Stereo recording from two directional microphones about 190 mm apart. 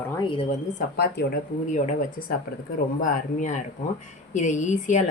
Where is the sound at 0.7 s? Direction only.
55° left (ahead or behind).